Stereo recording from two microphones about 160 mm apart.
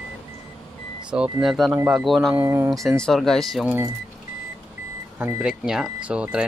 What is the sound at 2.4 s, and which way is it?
Speech, 15° right (ahead or behind).